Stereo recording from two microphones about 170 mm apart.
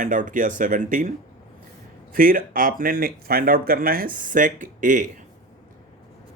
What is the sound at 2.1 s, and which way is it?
Speech, 55° right (ahead or behind).